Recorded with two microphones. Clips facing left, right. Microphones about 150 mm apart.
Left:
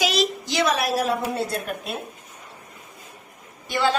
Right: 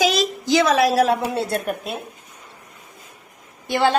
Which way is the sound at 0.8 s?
90° right.